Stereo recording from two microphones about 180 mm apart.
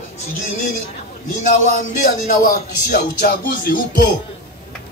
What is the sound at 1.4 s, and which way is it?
A man's voice, 45° left (ahead or behind).